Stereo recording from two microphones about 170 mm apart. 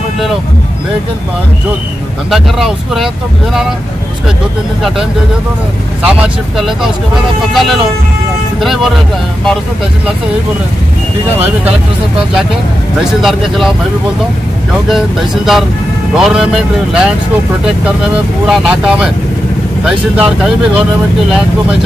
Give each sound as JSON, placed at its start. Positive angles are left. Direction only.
{"t": 2.3, "sound": "speech", "side_deg": 0}
{"t": 6.0, "sound": "speech", "side_deg": -5}
{"t": 13.0, "sound": "speech", "side_deg": 0}
{"t": 14.9, "sound": "speech", "side_deg": 0}
{"t": 18.4, "sound": "speech", "side_deg": -5}